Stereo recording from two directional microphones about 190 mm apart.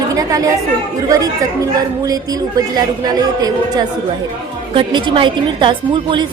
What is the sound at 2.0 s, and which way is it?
A woman's voice, 20° right (ahead or behind).